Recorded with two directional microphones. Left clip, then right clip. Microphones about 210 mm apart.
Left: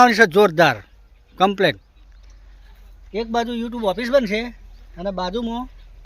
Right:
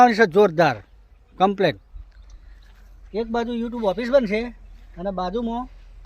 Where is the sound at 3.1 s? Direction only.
Centre (ahead or behind).